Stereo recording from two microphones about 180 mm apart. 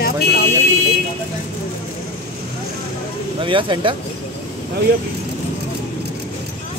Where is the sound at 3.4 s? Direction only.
30° right (ahead or behind).